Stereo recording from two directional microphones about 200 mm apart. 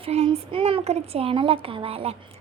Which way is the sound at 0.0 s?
30° right (ahead or behind).